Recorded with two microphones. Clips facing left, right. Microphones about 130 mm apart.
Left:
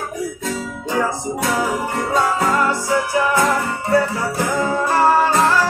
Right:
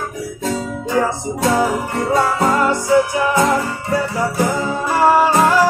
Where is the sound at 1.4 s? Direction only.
20° right (ahead or behind).